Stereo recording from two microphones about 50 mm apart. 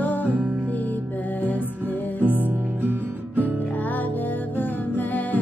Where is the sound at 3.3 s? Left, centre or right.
Left.